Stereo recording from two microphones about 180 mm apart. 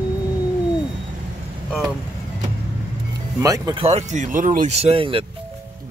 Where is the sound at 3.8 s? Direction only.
35° right (ahead or behind).